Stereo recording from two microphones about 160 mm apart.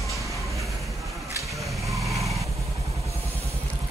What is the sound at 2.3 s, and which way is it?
Vehicle, 20° right (ahead or behind).